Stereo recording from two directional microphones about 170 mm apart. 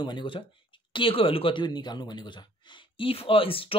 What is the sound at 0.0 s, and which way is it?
Speech, 25° left (ahead or behind).